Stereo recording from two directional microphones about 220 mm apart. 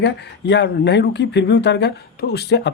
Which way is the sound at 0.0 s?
50° left (ahead or behind).